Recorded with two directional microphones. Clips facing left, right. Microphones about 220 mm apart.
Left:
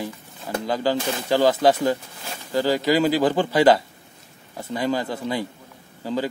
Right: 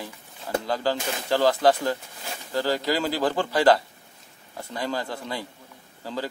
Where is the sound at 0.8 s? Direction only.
10° left (ahead or behind).